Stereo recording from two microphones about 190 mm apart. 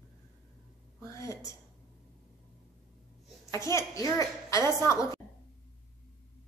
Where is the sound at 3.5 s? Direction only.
15° left (ahead or behind).